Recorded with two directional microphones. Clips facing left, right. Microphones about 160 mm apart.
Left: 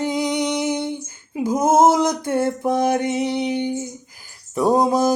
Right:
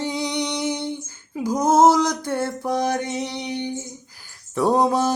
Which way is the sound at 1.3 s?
20° left (ahead or behind).